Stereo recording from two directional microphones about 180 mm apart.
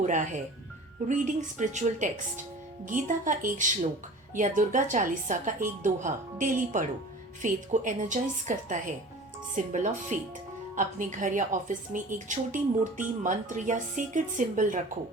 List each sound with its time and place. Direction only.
0.0 s speech: 45° right (ahead or behind)